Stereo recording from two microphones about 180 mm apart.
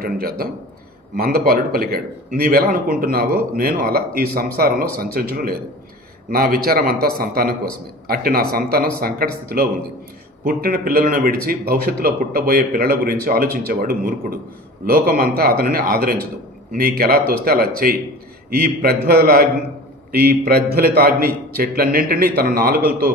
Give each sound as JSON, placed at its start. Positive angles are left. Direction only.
{"t": 0.0, "sound": "a man's voice", "side_deg": -55}